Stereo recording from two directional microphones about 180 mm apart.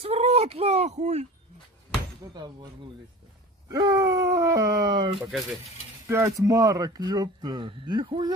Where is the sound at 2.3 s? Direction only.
25° right (ahead or behind).